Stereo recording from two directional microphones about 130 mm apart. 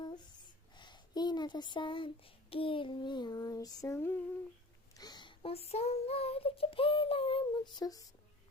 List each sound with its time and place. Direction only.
0.7 s speech: 35° left (ahead or behind)
4.9 s child singing: 30° left (ahead or behind)